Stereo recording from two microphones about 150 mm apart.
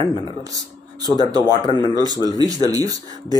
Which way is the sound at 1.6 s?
25° left (ahead or behind).